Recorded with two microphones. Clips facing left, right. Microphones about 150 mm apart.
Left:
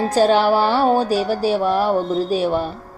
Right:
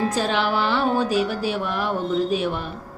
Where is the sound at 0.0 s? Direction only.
35° left (ahead or behind).